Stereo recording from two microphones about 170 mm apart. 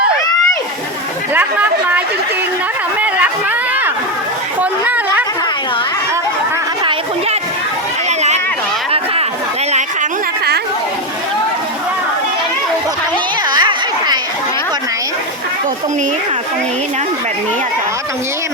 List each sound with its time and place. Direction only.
1.3 s chatter: 10° right (ahead or behind)
4.6 s chatter: 10° right (ahead or behind)
13.5 s a sound: 25° right (ahead or behind)